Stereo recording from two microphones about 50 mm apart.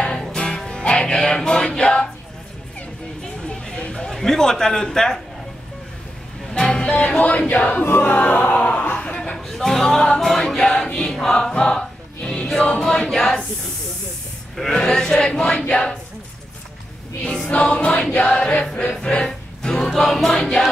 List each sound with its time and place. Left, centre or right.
0.2 s music: centre
3.4 s a sound: centre
4.1 s a man's voice: centre
6.5 s music: centre; by 8.2 s left
8.2 s speech: left
9.0 s a sound: left
9.5 s chant: centre
11.1 s music: centre
12.6 s chant: centre
14.7 s chant: centre
15.7 s music: centre
17.5 s music: left
19.0 s music: centre
20.3 s chant: centre